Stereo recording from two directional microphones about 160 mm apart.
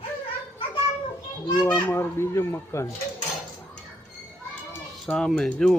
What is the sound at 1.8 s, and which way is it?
Speech, 15° left (ahead or behind).